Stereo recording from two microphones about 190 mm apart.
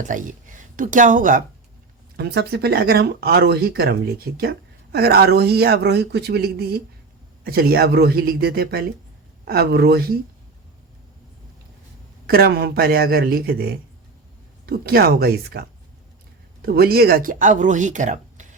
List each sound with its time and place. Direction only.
0.0 s speech: 40° right (ahead or behind)
2.1 s speech: 60° right (ahead or behind)
12.2 s speech: 55° right (ahead or behind)
16.6 s speech: 55° right (ahead or behind)